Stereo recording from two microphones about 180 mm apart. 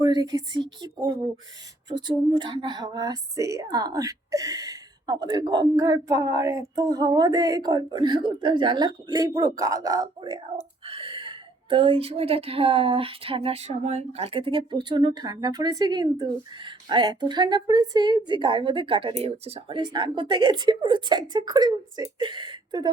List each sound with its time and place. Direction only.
0.0 s speech: 20° right (ahead or behind)